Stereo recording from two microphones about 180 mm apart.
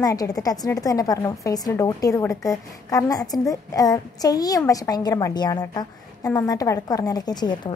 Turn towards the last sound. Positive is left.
turn(degrees=25)  # may be behind; listen again after turning